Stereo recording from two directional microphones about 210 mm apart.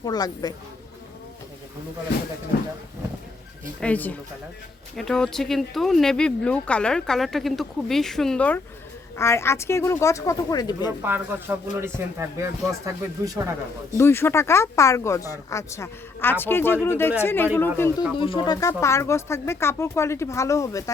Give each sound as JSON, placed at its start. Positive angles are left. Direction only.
{"t": 0.0, "sound": "a woman's voice", "side_deg": 20}
{"t": 3.8, "sound": "speech", "side_deg": 5}
{"t": 11.0, "sound": "speech", "side_deg": -10}
{"t": 14.0, "sound": "speech", "side_deg": 10}
{"t": 18.2, "sound": "speech", "side_deg": 20}